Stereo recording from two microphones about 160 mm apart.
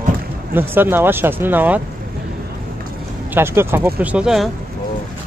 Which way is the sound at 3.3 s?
15° right (ahead or behind).